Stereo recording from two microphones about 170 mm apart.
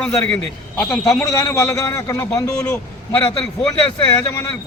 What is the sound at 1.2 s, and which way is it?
Speech, 15° left (ahead or behind).